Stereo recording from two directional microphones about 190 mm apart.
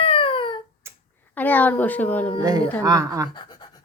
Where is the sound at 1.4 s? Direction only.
10° left (ahead or behind).